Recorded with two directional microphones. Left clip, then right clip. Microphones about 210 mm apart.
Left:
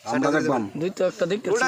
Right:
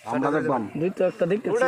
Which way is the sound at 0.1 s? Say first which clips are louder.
Left 2 dB; 35° left (ahead or behind).